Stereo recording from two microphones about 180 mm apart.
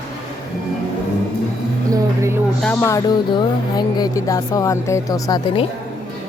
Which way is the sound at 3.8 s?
20° left (ahead or behind).